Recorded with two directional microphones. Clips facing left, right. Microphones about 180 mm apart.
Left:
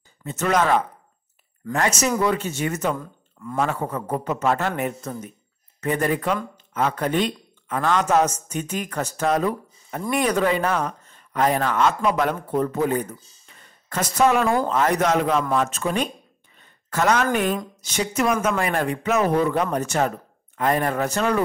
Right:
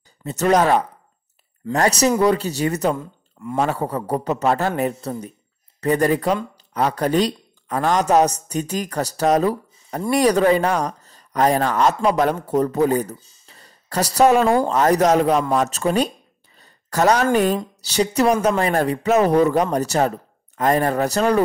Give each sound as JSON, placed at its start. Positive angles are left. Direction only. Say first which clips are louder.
{"t": 0.2, "sound": "speech", "louder": "right 4 dB", "side_deg": -40}
{"t": 3.0, "sound": "speech", "louder": "right 3 dB", "side_deg": -25}
{"t": 13.5, "sound": "a sound", "louder": "right 3 dB", "side_deg": -35}
{"t": 14.7, "sound": "speech", "louder": "right 4 dB", "side_deg": -40}